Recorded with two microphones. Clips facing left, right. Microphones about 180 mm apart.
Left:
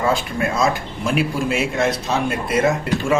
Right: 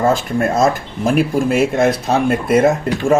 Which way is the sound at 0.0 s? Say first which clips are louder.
Right 5 dB; 50° right (ahead or behind).